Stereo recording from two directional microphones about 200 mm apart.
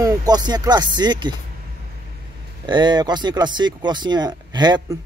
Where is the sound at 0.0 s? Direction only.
20° right (ahead or behind).